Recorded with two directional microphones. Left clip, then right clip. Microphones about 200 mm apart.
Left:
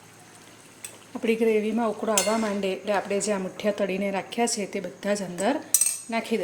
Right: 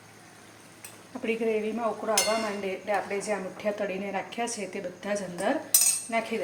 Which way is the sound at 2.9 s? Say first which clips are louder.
Left 2 dB; 65° left (ahead or behind).